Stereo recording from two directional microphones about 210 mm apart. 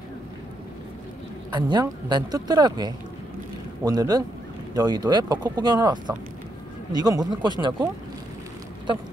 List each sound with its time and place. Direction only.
1.5 s a man's voice: 20° right (ahead or behind)